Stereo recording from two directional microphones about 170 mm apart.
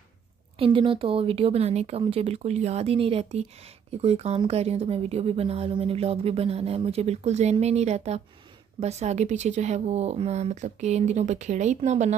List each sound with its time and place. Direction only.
0.6 s speech: 30° right (ahead or behind)